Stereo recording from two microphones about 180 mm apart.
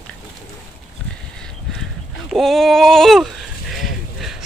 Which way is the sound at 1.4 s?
Centre (ahead or behind).